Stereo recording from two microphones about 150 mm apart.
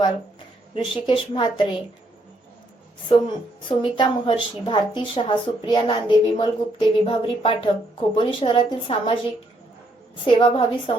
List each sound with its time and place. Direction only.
0.7 s a woman's voice: 35° left (ahead or behind)
3.1 s a woman's voice: 35° left (ahead or behind)
10.3 s a woman's voice: 30° left (ahead or behind)